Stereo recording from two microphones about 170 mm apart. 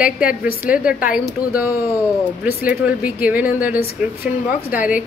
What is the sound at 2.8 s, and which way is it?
A woman's voice, 10° right (ahead or behind).